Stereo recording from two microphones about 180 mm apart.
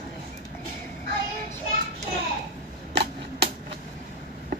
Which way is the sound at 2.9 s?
70° right (ahead or behind).